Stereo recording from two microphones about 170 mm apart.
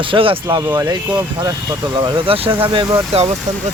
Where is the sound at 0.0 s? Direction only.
30° right (ahead or behind).